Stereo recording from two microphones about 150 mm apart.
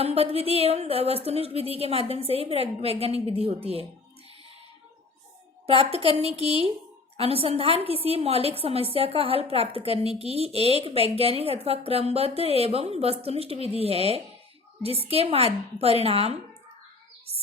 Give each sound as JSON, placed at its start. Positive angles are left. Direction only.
{"t": 0.0, "sound": "speech", "side_deg": -40}
{"t": 5.6, "sound": "speech", "side_deg": -40}